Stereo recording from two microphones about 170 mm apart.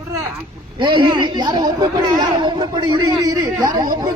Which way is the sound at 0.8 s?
30° right (ahead or behind).